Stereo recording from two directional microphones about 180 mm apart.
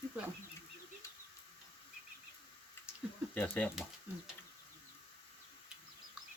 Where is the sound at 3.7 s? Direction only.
Centre (ahead or behind).